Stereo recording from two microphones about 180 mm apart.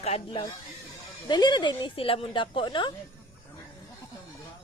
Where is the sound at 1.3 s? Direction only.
25° left (ahead or behind).